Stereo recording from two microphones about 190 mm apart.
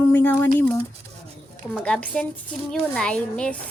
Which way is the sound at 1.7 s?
5° left (ahead or behind).